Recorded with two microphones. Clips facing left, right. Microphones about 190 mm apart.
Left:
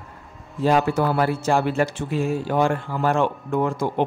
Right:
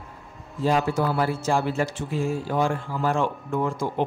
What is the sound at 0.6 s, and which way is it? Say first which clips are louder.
Speech: left 3 dB; 65° left (ahead or behind).